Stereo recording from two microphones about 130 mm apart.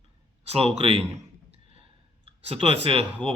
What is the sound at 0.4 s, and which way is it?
Speech, 50° right (ahead or behind).